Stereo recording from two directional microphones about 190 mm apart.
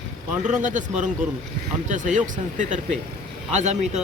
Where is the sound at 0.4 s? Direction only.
40° right (ahead or behind).